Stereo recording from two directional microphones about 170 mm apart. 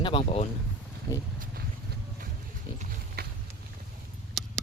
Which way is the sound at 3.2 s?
70° right (ahead or behind).